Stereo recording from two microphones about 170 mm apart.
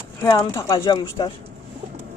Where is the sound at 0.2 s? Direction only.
25° left (ahead or behind).